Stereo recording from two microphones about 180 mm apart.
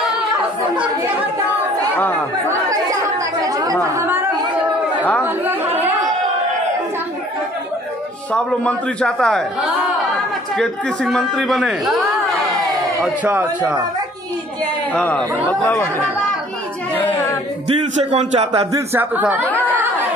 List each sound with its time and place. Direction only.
2.7 s a man's voice: 20° right (ahead or behind)
5.2 s a man's voice: 10° right (ahead or behind)
8.3 s a man's voice: 5° left (ahead or behind)
13.0 s a man's voice: 10° right (ahead or behind)
14.9 s a man's voice: 5° left (ahead or behind)
16.9 s child singing: 10° left (ahead or behind)
18.1 s speech: 40° right (ahead or behind)
18.7 s a man's voice: 15° right (ahead or behind)
19.4 s a sound: 10° left (ahead or behind)